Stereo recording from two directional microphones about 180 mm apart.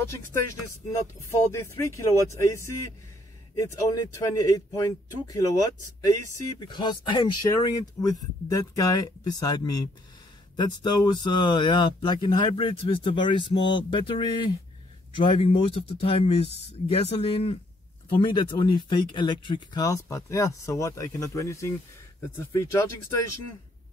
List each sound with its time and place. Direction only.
0.0 s speech: 15° left (ahead or behind)